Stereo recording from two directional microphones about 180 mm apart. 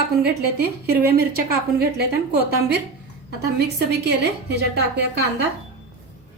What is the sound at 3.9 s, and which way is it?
A woman's voice, 65° right (ahead or behind).